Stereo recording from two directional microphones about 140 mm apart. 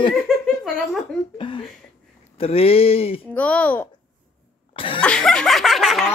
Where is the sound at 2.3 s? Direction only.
45° left (ahead or behind).